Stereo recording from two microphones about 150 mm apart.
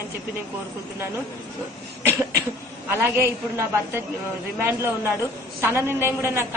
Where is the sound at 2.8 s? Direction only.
15° right (ahead or behind).